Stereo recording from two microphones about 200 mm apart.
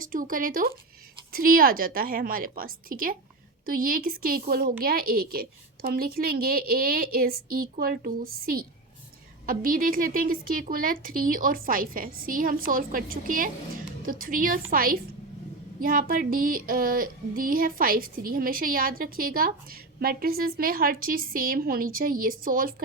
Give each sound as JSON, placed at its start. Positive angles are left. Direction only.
{"t": 0.0, "sound": "female singing", "side_deg": -45}